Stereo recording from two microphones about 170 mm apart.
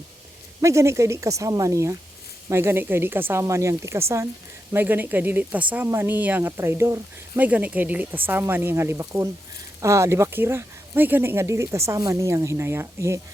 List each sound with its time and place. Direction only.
0.6 s speech: 15° right (ahead or behind)